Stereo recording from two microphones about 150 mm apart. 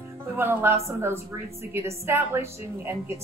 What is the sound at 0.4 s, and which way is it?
A woman's voice, 15° right (ahead or behind).